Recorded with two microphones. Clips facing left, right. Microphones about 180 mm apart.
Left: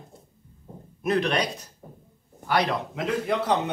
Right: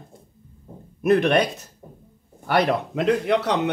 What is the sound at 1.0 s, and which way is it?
Speech, 55° right (ahead or behind).